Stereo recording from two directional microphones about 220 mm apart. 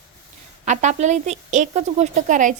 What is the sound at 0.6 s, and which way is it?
A woman's voice, 30° right (ahead or behind).